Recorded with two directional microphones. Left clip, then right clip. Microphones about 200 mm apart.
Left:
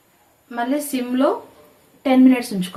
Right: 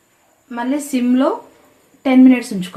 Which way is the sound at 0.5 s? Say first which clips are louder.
Right 2 dB; 40° right (ahead or behind).